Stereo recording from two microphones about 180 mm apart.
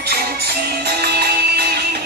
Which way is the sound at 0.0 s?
60° right (ahead or behind).